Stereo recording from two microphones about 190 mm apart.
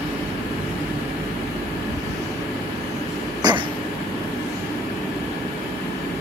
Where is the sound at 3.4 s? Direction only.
20° right (ahead or behind).